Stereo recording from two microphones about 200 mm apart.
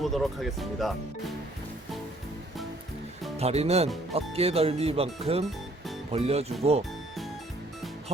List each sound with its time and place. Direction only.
0.0 s speech: centre (ahead or behind)
3.3 s speech: 30° right (ahead or behind)